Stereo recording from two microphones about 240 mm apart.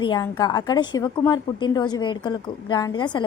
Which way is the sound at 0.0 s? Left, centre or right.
Centre.